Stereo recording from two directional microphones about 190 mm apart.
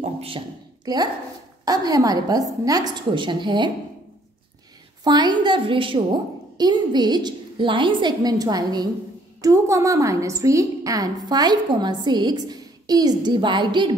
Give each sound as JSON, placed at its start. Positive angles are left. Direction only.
{"t": 0.0, "sound": "a sound", "side_deg": -30}
{"t": 1.6, "sound": "a woman's voice", "side_deg": -20}
{"t": 5.0, "sound": "a woman's voice", "side_deg": -20}